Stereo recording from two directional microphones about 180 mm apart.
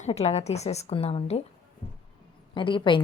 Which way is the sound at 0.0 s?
35° left (ahead or behind).